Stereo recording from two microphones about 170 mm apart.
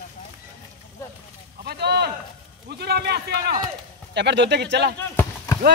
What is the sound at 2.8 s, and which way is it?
Speech, 75° right (ahead or behind).